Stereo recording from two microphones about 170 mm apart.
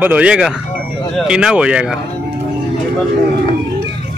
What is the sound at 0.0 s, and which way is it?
A man's voice, 10° right (ahead or behind).